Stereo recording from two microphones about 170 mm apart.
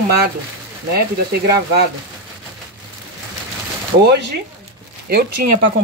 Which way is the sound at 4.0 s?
75° right (ahead or behind).